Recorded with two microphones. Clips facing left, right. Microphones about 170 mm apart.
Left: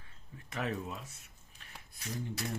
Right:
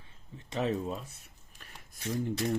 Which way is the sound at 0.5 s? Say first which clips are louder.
Right 6 dB; 25° right (ahead or behind).